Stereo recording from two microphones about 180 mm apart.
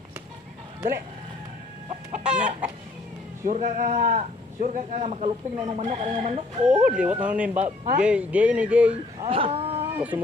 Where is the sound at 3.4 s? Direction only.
45° right (ahead or behind).